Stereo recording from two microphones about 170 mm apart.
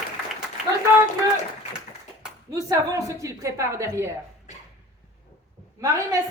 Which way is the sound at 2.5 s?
20° right (ahead or behind).